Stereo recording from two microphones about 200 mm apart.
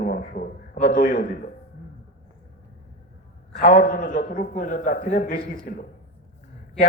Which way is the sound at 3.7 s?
40° left (ahead or behind).